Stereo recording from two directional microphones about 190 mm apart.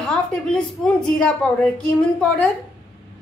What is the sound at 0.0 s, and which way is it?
A woman's voice, 5° left (ahead or behind).